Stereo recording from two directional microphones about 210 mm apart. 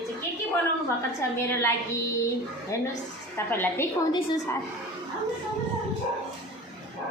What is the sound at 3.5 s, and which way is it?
Speech, 10° left (ahead or behind).